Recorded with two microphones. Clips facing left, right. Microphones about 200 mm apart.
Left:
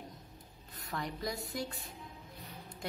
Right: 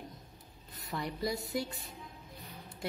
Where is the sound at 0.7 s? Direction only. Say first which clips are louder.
Right 2 dB; 5° right (ahead or behind).